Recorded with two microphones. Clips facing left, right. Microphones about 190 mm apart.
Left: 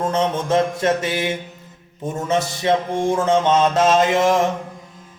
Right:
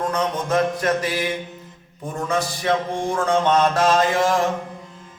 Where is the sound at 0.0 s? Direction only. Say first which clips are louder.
Left 3 dB; 25° left (ahead or behind).